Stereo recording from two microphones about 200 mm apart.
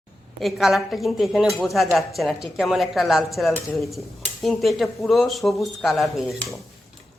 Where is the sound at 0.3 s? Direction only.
Centre (ahead or behind).